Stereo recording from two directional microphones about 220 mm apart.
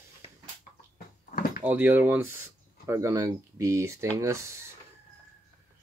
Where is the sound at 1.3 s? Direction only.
40° left (ahead or behind).